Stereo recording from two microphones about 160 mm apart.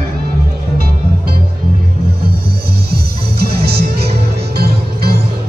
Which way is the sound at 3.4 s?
75° right (ahead or behind).